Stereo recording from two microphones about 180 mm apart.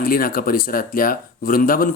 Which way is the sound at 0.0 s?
55° left (ahead or behind).